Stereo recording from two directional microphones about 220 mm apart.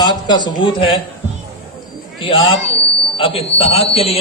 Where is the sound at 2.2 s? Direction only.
20° left (ahead or behind).